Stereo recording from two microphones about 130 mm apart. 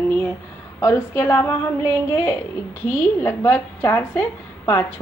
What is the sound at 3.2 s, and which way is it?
Speech, 20° left (ahead or behind).